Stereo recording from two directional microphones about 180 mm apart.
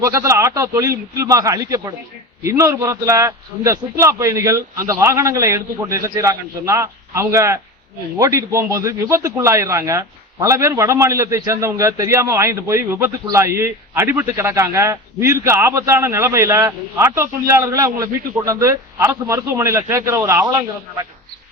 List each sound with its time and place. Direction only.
0.0 s a man's voice: 15° right (ahead or behind)